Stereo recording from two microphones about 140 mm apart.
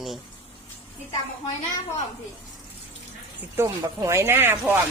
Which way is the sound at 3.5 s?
20° right (ahead or behind).